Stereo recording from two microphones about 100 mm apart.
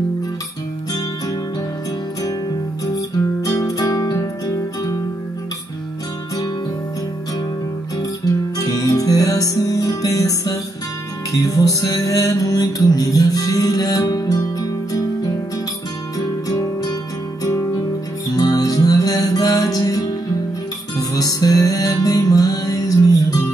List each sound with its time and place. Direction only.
3.4 s music: 35° left (ahead or behind)
8.5 s music: 35° left (ahead or behind)